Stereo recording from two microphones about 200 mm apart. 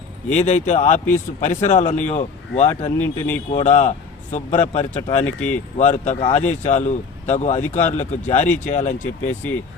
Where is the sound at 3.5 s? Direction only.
35° left (ahead or behind).